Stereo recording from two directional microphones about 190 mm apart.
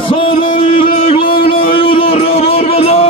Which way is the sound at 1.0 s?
30° left (ahead or behind).